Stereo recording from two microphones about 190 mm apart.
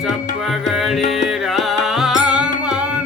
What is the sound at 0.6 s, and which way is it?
Music, centre (ahead or behind).